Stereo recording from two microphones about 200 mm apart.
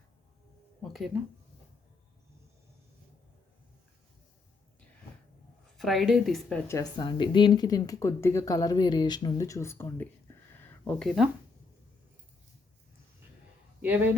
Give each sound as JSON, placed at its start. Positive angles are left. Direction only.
{"t": 0.8, "sound": "music", "side_deg": 0}
{"t": 5.7, "sound": "a woman's voice", "side_deg": 0}
{"t": 6.7, "sound": "speech", "side_deg": 20}
{"t": 13.8, "sound": "speech", "side_deg": -10}